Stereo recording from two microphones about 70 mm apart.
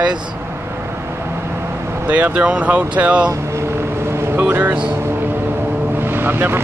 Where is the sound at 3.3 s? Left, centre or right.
Right.